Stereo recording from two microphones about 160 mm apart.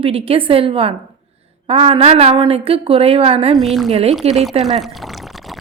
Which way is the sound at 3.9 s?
40° right (ahead or behind).